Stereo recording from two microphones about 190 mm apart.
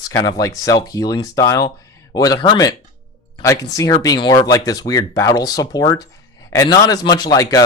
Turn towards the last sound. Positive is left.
turn(degrees=20)  # may be behind; listen again after turning